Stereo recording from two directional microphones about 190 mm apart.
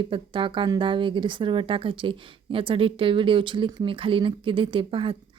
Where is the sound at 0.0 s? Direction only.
25° right (ahead or behind).